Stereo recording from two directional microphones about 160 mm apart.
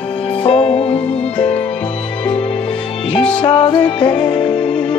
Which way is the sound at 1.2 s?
5° left (ahead or behind).